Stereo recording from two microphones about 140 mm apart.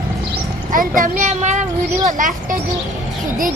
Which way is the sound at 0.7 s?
75° right (ahead or behind).